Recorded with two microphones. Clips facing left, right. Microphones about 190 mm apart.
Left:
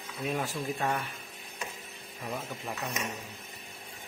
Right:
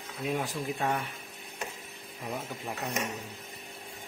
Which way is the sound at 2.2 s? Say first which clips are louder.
Even; 10° right (ahead or behind).